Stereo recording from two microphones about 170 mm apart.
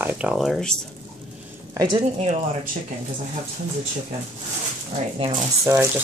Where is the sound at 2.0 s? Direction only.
40° right (ahead or behind).